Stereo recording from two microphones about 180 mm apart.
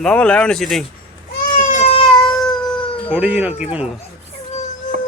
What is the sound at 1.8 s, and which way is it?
Cat, 30° left (ahead or behind).